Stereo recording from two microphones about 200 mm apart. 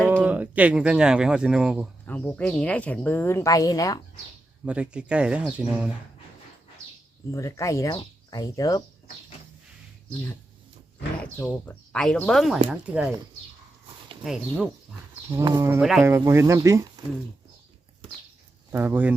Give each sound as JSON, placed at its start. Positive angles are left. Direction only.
{"t": 0.1, "sound": "speech", "side_deg": -10}
{"t": 2.0, "sound": "a woman's voice", "side_deg": 5}
{"t": 4.6, "sound": "speech", "side_deg": -5}
{"t": 7.3, "sound": "a woman's voice", "side_deg": 15}
{"t": 11.2, "sound": "speech", "side_deg": 5}
{"t": 14.3, "sound": "speech", "side_deg": -5}
{"t": 15.3, "sound": "speech", "side_deg": -15}
{"t": 15.8, "sound": "speech", "side_deg": 0}
{"t": 16.0, "sound": "speech", "side_deg": -15}
{"t": 18.7, "sound": "speech", "side_deg": -10}